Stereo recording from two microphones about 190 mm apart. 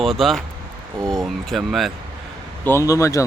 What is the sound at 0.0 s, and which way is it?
Speech, centre (ahead or behind).